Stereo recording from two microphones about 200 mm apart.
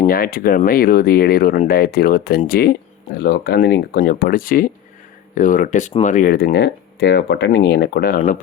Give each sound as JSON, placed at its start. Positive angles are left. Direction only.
{"t": 0.1, "sound": "speech", "side_deg": 45}